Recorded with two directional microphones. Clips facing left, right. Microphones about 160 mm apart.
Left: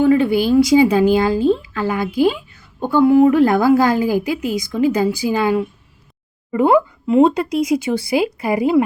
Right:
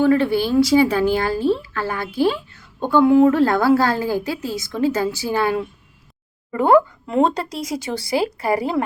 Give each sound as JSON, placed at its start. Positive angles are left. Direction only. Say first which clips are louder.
{"t": 0.0, "sound": "speech", "louder": "left 3 dB", "side_deg": 15}